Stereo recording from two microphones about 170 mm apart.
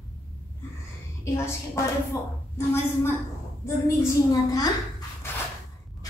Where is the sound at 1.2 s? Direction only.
15° left (ahead or behind).